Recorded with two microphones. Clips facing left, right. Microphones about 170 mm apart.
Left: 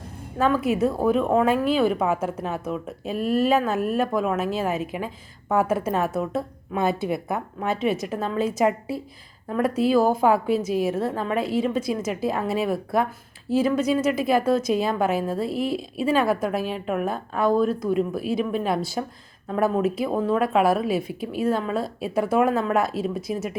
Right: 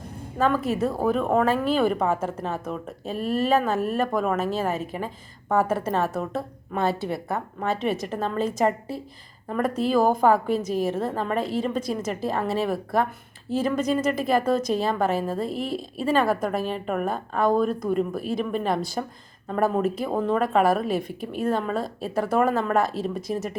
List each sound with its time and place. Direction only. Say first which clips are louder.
0.3 s a woman's voice: left 2 dB; 10° left (ahead or behind)
15.4 s a woman's voice: left 3 dB; 40° right (ahead or behind)
16.0 s a woman's voice: left 1 dB; 10° left (ahead or behind)